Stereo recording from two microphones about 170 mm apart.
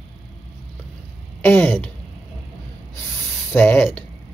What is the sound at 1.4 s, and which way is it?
Speech, 10° left (ahead or behind).